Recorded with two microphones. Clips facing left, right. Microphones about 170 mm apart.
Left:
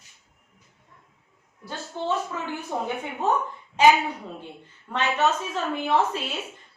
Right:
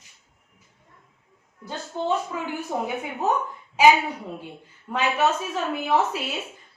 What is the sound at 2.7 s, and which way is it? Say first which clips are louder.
A woman's voice: even; 15° right (ahead or behind).